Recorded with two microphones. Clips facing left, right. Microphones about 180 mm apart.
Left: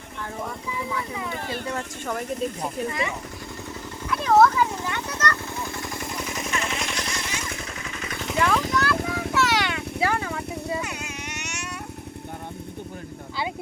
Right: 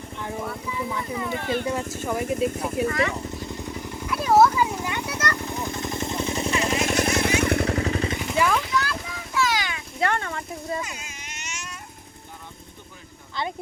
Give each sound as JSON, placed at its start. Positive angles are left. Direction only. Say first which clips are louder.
{"t": 1.5, "sound": "speech", "louder": "right 4 dB", "side_deg": -15}
{"t": 4.0, "sound": "vehicle", "louder": "even", "side_deg": -10}
{"t": 7.8, "sound": "vehicle", "louder": "right 11 dB", "side_deg": -35}
{"t": 8.3, "sound": "vehicle", "louder": "left 1 dB", "side_deg": 0}
{"t": 8.6, "sound": "vehicle", "louder": "left 3 dB", "side_deg": 55}
{"t": 10.0, "sound": "vehicle", "louder": "right 1 dB", "side_deg": 5}
{"t": 10.8, "sound": "vehicle", "louder": "left 2 dB", "side_deg": 65}